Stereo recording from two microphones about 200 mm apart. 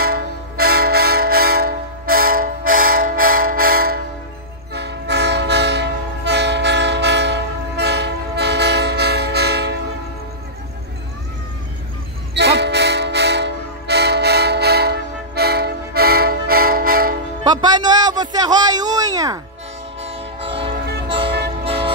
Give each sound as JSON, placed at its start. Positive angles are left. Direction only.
{"t": 0.0, "sound": "vehicle", "side_deg": -50}
{"t": 2.9, "sound": "a sound", "side_deg": -45}
{"t": 4.7, "sound": "train", "side_deg": -55}
{"t": 12.4, "sound": "train", "side_deg": -60}
{"t": 17.4, "sound": "a sound", "side_deg": -20}
{"t": 20.0, "sound": "train", "side_deg": -30}